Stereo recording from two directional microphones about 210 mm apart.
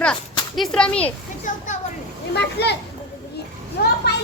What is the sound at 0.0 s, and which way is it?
Speech, centre (ahead or behind).